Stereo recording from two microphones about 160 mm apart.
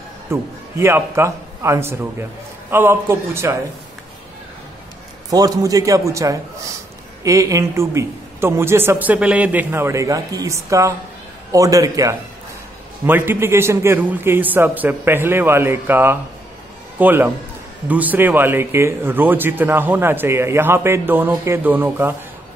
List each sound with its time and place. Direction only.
0.3 s speech: 15° right (ahead or behind)
5.3 s a man's voice: 20° right (ahead or behind)